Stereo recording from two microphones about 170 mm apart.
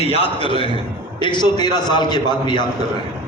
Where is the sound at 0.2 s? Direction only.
30° left (ahead or behind).